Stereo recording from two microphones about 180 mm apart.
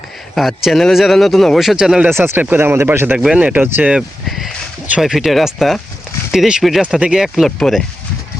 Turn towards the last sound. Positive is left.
turn(degrees=0)  # may be behind; listen again after turning